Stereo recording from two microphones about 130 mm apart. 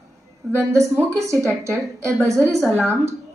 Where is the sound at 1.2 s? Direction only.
25° right (ahead or behind).